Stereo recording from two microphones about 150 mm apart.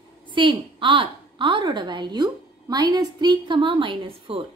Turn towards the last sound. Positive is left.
turn(degrees=-35)  # may be behind; listen again after turning